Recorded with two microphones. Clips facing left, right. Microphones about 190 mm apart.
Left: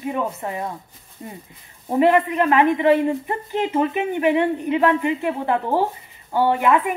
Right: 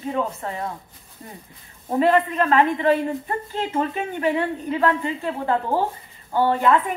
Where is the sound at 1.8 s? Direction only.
15° left (ahead or behind).